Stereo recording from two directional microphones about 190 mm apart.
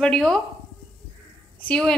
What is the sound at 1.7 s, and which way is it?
Speech, 5° left (ahead or behind).